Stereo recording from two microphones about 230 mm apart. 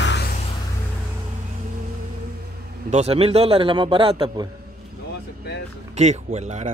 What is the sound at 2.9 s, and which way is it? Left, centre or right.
A man's voice, right.